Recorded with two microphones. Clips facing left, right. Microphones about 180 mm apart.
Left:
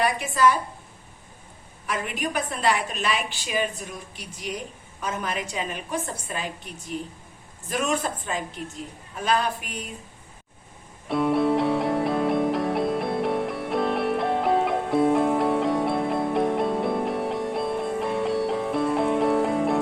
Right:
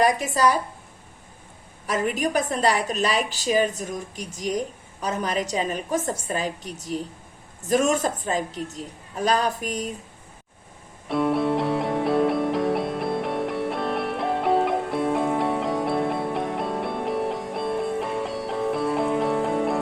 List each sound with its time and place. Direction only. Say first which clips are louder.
0.0 s a woman's voice: right 2 dB; 40° right (ahead or behind)
1.9 s a woman's voice: right 5 dB; 40° right (ahead or behind)
11.1 s music: left 1 dB; centre (ahead or behind)